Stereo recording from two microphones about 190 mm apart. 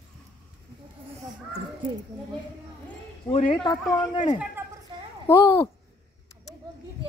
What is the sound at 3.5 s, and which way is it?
A child's voice, 20° left (ahead or behind).